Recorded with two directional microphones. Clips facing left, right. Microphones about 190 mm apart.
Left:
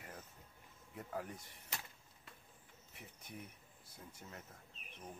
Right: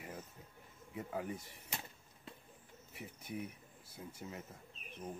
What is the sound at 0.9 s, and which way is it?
Speech, 5° right (ahead or behind).